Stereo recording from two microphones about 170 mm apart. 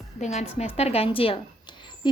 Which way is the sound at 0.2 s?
40° left (ahead or behind).